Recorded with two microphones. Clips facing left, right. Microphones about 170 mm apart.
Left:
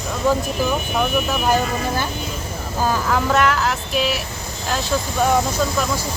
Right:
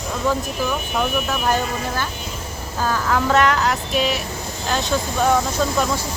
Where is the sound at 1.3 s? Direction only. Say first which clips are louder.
Left 2 dB; 10° left (ahead or behind).